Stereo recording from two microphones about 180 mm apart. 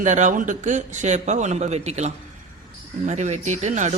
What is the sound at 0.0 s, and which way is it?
A man's voice, 40° right (ahead or behind).